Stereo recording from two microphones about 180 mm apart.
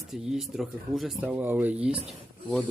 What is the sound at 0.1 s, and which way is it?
Speech, 5° right (ahead or behind).